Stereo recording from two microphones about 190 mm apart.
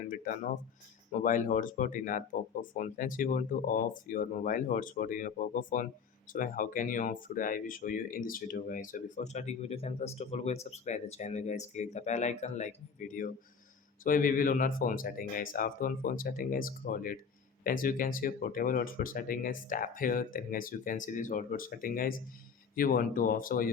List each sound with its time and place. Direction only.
0.1 s speech: 45° left (ahead or behind)